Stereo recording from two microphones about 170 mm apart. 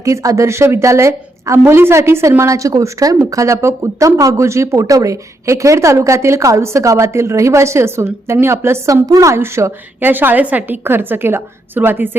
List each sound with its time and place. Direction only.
0.0 s speech: 20° right (ahead or behind)